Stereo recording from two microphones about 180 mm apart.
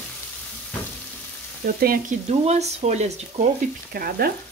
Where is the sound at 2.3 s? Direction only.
40° right (ahead or behind).